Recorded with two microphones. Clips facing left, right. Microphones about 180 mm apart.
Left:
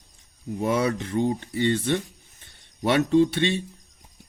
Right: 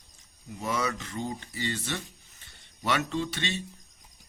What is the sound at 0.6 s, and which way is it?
Speech, 55° left (ahead or behind).